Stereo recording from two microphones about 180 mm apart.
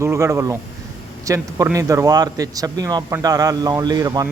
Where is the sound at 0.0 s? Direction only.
15° right (ahead or behind).